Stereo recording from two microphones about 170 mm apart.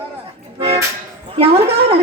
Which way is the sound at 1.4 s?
35° right (ahead or behind).